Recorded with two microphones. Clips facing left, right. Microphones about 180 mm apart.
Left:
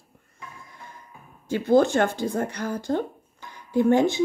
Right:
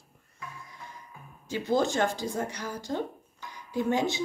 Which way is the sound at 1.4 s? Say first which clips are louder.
Left 7 dB; 55° left (ahead or behind).